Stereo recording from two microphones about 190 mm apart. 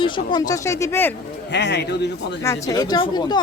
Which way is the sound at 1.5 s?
65° left (ahead or behind).